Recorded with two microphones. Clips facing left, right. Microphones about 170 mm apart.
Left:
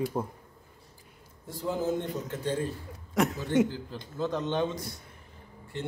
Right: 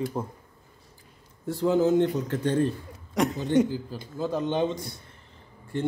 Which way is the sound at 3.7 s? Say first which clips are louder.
Right 4 dB; 10° right (ahead or behind).